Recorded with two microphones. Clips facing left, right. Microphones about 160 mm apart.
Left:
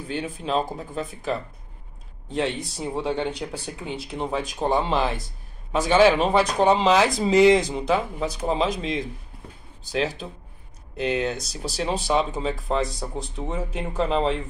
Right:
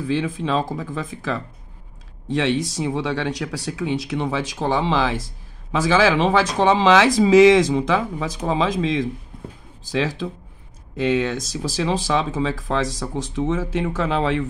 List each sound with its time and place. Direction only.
0.0 s speech: 90° right